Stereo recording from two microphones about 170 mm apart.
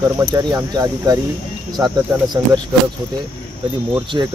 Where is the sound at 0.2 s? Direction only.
20° right (ahead or behind).